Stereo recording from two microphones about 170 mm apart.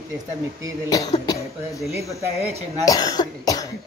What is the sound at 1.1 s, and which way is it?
Speech, 20° left (ahead or behind).